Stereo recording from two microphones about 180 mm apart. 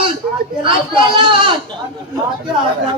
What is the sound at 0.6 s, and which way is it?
Speech, 30° right (ahead or behind).